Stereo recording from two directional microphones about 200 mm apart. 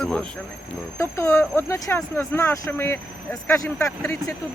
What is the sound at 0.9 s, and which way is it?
Speech, 15° left (ahead or behind).